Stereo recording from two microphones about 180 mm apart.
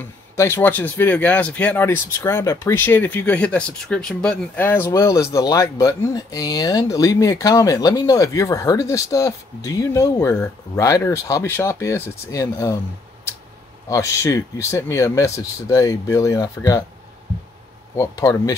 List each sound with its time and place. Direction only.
0.0 s speech: 15° left (ahead or behind)
13.8 s speech: 20° left (ahead or behind)
17.9 s speech: 15° left (ahead or behind)